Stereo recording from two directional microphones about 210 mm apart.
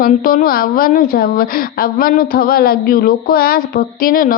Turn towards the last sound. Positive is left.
turn(degrees=45)  # may be behind; listen again after turning